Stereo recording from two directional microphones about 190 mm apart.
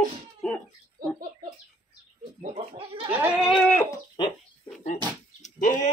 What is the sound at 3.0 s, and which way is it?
Goat, 5° right (ahead or behind).